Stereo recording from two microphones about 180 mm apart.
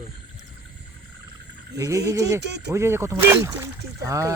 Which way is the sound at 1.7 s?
20° right (ahead or behind).